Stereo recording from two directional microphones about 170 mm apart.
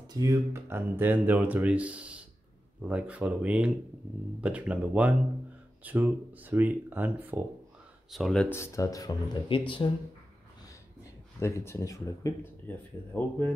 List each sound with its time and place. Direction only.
0.1 s speech: 20° right (ahead or behind)
8.1 s speech: centre (ahead or behind)
8.5 s speech: 15° left (ahead or behind)
11.3 s speech: 15° left (ahead or behind)